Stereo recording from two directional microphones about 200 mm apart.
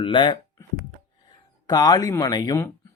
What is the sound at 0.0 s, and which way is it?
Speech, 25° left (ahead or behind).